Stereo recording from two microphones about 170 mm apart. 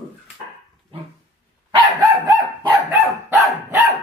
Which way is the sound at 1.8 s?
25° right (ahead or behind).